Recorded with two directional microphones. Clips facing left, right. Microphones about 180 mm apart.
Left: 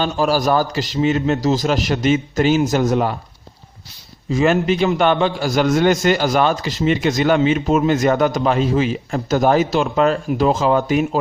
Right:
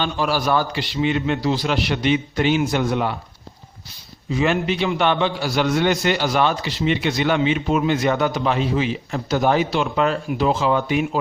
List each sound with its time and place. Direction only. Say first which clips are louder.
0.0 s a man's voice: left 4 dB; 40° left (ahead or behind)
4.3 s a man's voice: left 4 dB; 45° left (ahead or behind)